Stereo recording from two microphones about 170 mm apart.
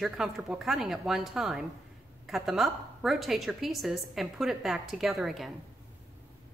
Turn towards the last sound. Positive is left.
turn(degrees=0)  # may be behind; listen again after turning